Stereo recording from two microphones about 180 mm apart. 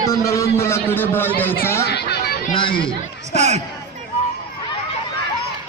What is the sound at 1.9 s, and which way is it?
Chatter, 65° left (ahead or behind).